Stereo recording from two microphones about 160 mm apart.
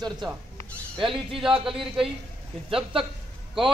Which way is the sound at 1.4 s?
5° right (ahead or behind).